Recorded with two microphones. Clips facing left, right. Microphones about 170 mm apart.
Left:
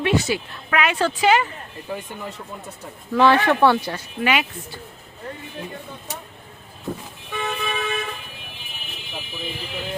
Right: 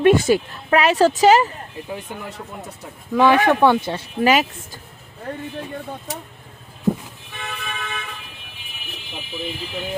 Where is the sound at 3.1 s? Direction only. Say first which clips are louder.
Right 1 dB; 15° right (ahead or behind).